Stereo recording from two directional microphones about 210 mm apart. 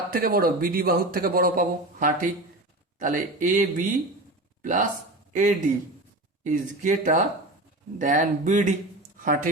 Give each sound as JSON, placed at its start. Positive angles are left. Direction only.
{"t": 0.1, "sound": "speech", "side_deg": -45}